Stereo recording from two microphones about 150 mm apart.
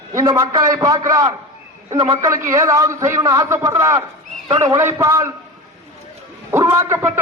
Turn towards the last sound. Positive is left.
turn(degrees=-15)  # may be behind; listen again after turning